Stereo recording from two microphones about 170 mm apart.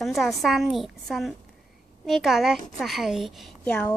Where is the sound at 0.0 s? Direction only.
Centre (ahead or behind).